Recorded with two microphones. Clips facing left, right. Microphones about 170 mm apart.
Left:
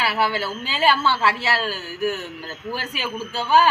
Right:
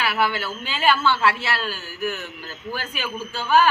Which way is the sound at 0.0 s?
35° left (ahead or behind).